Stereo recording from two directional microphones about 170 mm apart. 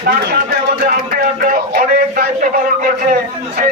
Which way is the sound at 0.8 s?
60° right (ahead or behind).